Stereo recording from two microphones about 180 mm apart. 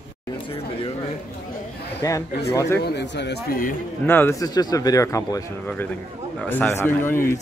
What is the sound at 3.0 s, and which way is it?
Speech, 70° left (ahead or behind).